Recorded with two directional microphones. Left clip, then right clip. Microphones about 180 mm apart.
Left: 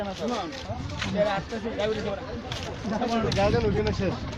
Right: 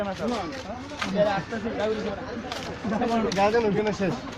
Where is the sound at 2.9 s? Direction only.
35° right (ahead or behind).